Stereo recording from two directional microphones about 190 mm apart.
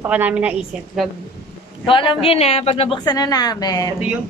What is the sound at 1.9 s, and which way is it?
A woman's voice, 25° left (ahead or behind).